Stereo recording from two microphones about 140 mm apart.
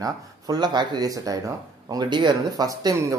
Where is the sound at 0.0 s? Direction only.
30° right (ahead or behind).